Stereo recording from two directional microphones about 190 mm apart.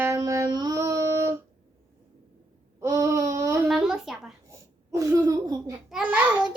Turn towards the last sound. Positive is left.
turn(degrees=-10)  # may be behind; listen again after turning